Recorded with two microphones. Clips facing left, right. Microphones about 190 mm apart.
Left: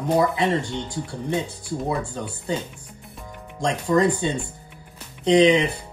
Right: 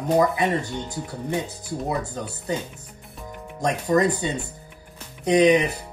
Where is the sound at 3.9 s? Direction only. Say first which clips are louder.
Left 1 dB; 45° right (ahead or behind).